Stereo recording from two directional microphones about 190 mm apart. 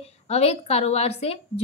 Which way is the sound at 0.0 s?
35° left (ahead or behind).